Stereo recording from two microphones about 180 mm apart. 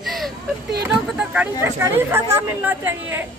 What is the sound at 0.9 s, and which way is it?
A woman's voice, 5° right (ahead or behind).